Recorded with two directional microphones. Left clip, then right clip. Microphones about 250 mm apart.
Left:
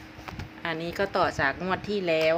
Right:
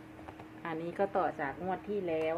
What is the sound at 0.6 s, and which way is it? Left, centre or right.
Speech, centre.